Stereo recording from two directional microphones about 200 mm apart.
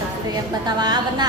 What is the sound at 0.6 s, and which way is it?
Speech, 20° right (ahead or behind).